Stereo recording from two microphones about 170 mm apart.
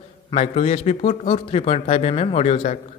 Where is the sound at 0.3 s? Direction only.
40° left (ahead or behind).